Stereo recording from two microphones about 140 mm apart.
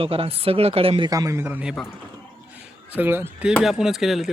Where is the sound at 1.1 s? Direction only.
25° right (ahead or behind).